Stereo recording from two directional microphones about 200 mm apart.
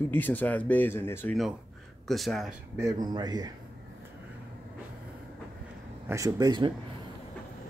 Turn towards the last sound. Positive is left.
turn(degrees=-20)  # may be behind; listen again after turning